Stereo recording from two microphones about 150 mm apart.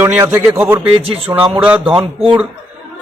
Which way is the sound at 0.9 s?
40° right (ahead or behind).